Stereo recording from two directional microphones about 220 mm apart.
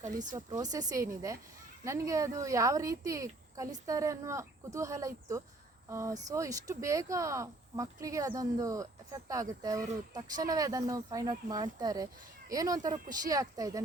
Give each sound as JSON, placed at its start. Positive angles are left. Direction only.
{"t": 0.3, "sound": "speech", "side_deg": -15}